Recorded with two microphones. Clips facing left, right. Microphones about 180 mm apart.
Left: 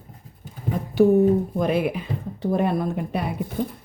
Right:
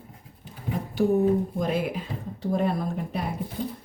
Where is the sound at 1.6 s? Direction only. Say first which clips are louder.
Left 4 dB; 65° left (ahead or behind).